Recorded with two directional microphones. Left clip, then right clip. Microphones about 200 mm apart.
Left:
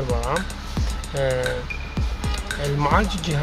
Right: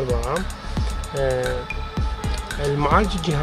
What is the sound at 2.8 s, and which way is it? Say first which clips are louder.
Speech: right 1 dB; 25° right (ahead or behind).